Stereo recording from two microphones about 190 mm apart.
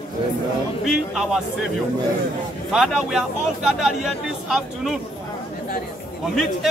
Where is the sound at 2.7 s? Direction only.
5° right (ahead or behind).